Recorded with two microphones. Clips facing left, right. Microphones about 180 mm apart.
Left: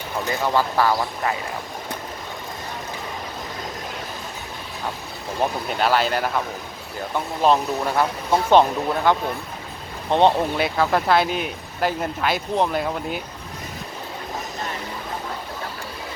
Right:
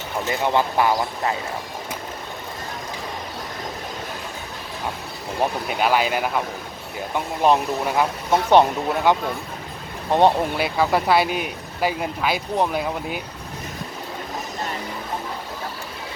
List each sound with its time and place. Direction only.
0.3 s speech: 20° right (ahead or behind)
5.6 s speech: 10° right (ahead or behind)
7.4 s speech: 15° right (ahead or behind)
10.1 s speech: 10° right (ahead or behind)